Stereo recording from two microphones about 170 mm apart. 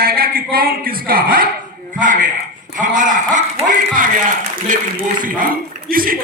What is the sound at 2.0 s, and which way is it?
A man's voice, 50° right (ahead or behind).